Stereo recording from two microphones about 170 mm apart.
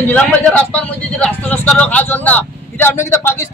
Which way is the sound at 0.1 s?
5° left (ahead or behind).